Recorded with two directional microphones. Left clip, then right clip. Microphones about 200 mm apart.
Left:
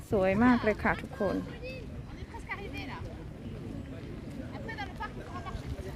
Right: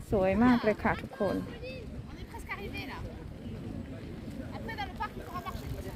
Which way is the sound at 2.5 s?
55° right (ahead or behind).